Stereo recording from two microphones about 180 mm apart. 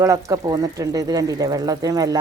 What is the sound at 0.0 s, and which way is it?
Speech, 20° right (ahead or behind).